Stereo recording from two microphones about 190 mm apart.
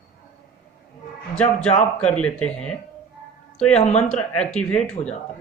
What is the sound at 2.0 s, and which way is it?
Speech, 5° left (ahead or behind).